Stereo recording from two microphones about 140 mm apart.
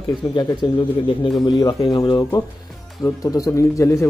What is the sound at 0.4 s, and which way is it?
A man's voice, 30° left (ahead or behind).